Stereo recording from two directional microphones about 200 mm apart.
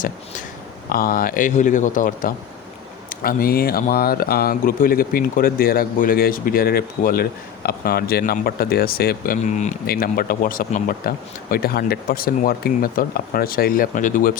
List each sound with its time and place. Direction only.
0.9 s speech: 45° left (ahead or behind)
9.8 s speech: 50° left (ahead or behind)